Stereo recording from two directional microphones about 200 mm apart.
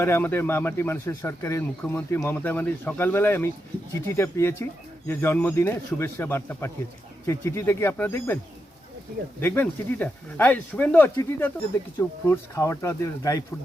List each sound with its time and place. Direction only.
0.0 s speech: 10° left (ahead or behind)
9.4 s speech: 10° left (ahead or behind)